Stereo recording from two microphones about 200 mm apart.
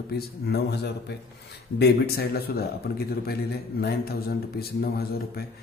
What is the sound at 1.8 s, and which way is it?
A man's voice, 50° left (ahead or behind).